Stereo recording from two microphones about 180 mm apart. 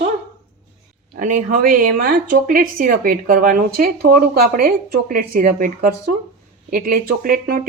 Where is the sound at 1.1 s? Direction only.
45° right (ahead or behind).